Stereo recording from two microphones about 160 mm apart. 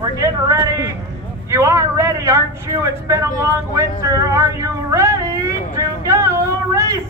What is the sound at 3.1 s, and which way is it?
Speech, 20° right (ahead or behind).